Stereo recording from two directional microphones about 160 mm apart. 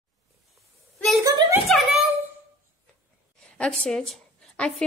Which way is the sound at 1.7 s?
Centre (ahead or behind).